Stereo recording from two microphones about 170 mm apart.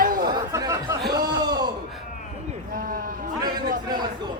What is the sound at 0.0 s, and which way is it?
Chatter, 55° right (ahead or behind).